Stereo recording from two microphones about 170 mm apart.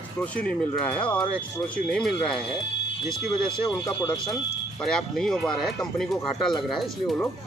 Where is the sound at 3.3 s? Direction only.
25° left (ahead or behind).